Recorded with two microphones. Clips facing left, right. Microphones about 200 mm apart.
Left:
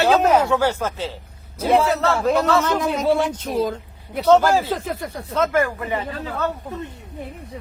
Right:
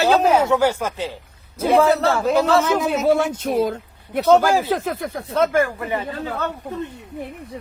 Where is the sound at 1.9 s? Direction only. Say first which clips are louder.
Right 2 dB; 30° right (ahead or behind).